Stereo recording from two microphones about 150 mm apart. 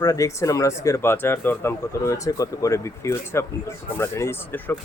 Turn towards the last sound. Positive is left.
turn(degrees=15)  # may be behind; listen again after turning